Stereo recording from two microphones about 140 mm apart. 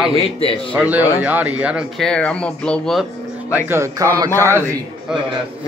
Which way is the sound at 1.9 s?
5° left (ahead or behind).